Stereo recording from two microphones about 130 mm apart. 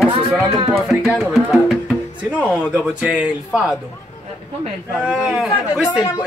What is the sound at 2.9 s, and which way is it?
Speech, 10° right (ahead or behind).